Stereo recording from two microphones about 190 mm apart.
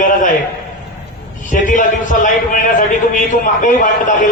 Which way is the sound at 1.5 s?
45° left (ahead or behind).